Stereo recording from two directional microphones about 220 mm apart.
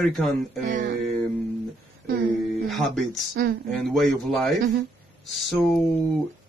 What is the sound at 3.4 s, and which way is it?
Speech, 45° right (ahead or behind).